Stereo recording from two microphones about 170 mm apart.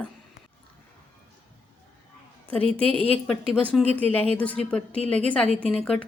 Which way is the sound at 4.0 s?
10° left (ahead or behind).